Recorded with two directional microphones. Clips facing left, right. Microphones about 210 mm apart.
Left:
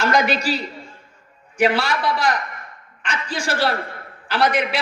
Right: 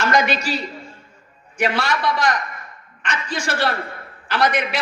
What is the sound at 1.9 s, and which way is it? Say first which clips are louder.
A man's voice: even; 30° left (ahead or behind).